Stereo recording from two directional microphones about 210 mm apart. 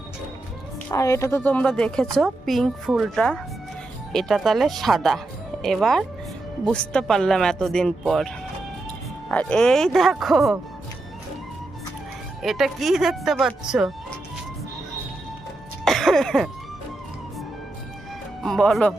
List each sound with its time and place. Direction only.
0.9 s a woman's voice: 15° left (ahead or behind)
9.3 s speech: 5° left (ahead or behind)
12.4 s speech: centre (ahead or behind)
15.8 s music: centre (ahead or behind)
18.4 s speech: centre (ahead or behind)